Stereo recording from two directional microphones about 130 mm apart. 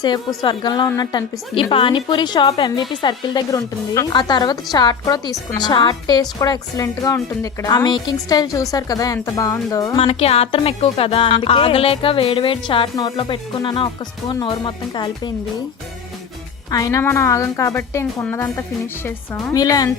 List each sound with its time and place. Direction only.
0.0 s speech: 30° left (ahead or behind)
1.5 s a woman's voice: 45° left (ahead or behind); by 10.0 s 30° left (ahead or behind)
10.0 s music: 50° left (ahead or behind)
14.3 s speech: 40° left (ahead or behind)
16.7 s a woman's voice: 25° left (ahead or behind)
19.5 s a woman's voice: 30° left (ahead or behind)